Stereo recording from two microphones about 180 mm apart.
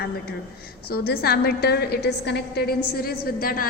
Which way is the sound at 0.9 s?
60° left (ahead or behind).